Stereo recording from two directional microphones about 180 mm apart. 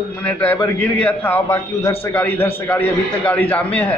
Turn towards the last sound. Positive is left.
turn(degrees=10)  # may be behind; listen again after turning